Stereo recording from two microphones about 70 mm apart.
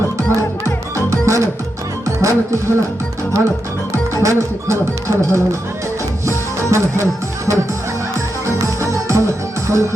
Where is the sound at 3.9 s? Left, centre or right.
Right.